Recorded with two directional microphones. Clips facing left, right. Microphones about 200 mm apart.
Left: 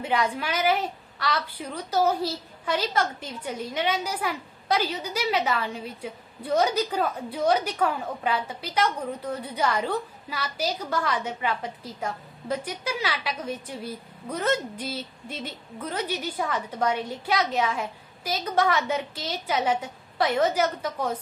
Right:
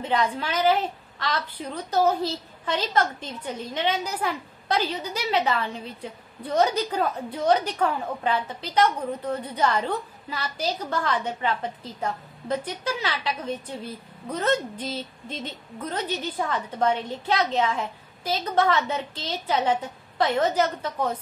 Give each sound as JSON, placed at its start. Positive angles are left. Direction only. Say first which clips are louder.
{"t": 0.0, "sound": "a woman's voice", "louder": "right 1 dB", "side_deg": 10}